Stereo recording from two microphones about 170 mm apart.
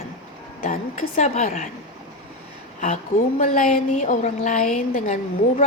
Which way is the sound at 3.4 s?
50° left (ahead or behind).